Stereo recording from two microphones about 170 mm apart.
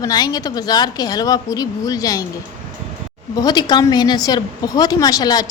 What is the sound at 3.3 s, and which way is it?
Speech, 25° left (ahead or behind).